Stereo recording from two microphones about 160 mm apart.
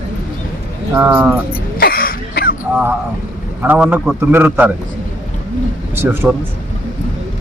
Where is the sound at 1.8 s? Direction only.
70° left (ahead or behind).